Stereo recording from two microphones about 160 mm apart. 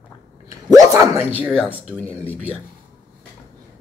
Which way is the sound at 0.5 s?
20° right (ahead or behind).